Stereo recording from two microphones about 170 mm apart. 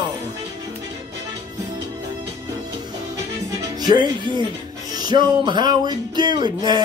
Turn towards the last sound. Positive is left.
turn(degrees=-25)  # may be behind; listen again after turning